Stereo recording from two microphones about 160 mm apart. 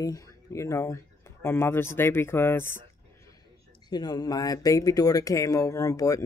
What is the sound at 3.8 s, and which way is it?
Speech, 25° left (ahead or behind).